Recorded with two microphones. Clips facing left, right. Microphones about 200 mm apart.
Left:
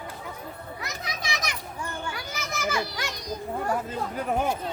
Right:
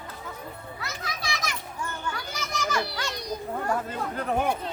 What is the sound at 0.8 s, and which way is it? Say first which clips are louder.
Children playing: even; 20° left (ahead or behind).